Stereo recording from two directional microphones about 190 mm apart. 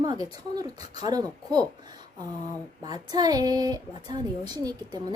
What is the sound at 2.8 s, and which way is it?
A woman's voice, 20° right (ahead or behind).